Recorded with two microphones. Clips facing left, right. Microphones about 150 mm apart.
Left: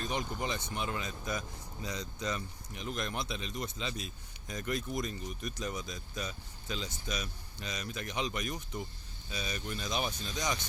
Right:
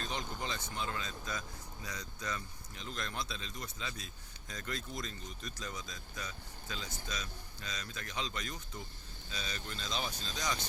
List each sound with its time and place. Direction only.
0.0 s speech: 15° left (ahead or behind)